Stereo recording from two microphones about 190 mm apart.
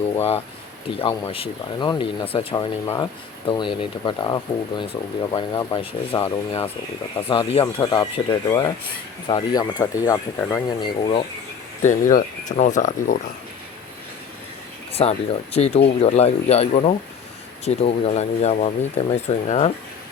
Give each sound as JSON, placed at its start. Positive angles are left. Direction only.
{"t": 0.2, "sound": "speech", "side_deg": 30}
{"t": 11.8, "sound": "speech", "side_deg": 40}
{"t": 14.9, "sound": "speech", "side_deg": 30}